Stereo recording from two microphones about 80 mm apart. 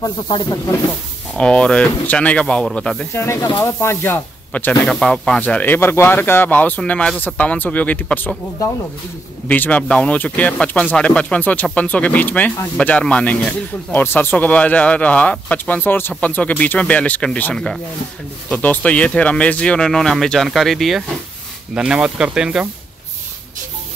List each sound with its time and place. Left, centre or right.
1.4 s speech: centre
3.2 s speech: left
4.8 s speech: centre
5.4 s speech: left
6.8 s speech: centre
9.5 s speech: centre
21.7 s speech: centre